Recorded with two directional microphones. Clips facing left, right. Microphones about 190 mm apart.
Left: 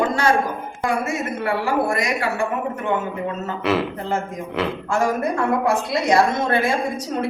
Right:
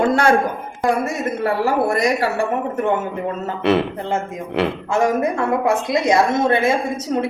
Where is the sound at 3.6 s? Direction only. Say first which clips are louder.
Right 4 dB; 25° right (ahead or behind).